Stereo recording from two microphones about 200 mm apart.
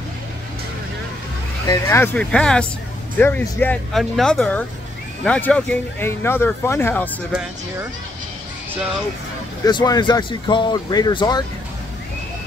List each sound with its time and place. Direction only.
1.7 s speech: 10° left (ahead or behind)
9.7 s speech: 20° left (ahead or behind)